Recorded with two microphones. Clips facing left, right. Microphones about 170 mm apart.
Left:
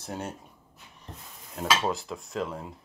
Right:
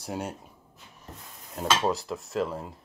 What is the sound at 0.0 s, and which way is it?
Speech, 10° right (ahead or behind).